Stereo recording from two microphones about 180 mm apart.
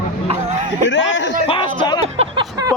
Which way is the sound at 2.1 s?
25° right (ahead or behind).